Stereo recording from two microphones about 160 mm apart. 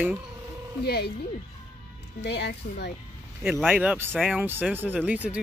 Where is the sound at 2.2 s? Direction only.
90° left.